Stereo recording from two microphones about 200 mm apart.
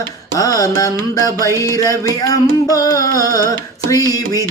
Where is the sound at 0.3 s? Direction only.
15° left (ahead or behind).